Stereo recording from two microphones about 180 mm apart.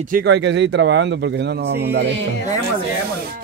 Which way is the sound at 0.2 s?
80° right.